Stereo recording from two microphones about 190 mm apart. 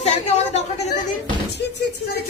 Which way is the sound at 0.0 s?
35° left (ahead or behind).